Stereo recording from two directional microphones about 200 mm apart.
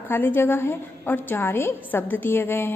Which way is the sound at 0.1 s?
10° left (ahead or behind).